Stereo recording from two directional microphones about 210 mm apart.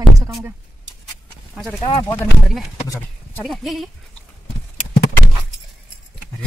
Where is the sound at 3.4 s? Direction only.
Centre (ahead or behind).